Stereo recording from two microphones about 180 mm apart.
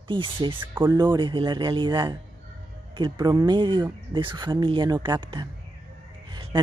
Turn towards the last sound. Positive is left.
turn(degrees=-25)  # may be behind; listen again after turning